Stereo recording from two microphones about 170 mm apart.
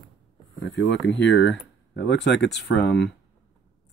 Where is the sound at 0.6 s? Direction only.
90° left.